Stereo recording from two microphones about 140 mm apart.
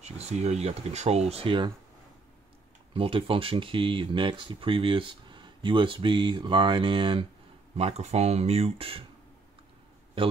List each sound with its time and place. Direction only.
0.0 s speech: 55° right (ahead or behind)
2.9 s speech: 40° right (ahead or behind)
7.7 s speech: 50° right (ahead or behind)